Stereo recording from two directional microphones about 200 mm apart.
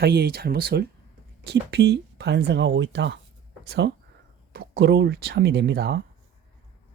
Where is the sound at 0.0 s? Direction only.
55° right (ahead or behind).